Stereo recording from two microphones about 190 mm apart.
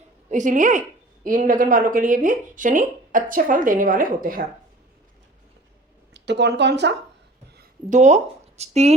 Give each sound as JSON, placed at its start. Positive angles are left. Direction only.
{"t": 0.3, "sound": "a woman's voice", "side_deg": -40}
{"t": 6.1, "sound": "speech", "side_deg": -65}
{"t": 7.9, "sound": "speech", "side_deg": -40}